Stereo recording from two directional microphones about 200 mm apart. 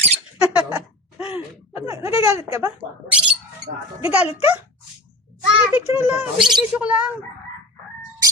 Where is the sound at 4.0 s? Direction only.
10° right (ahead or behind).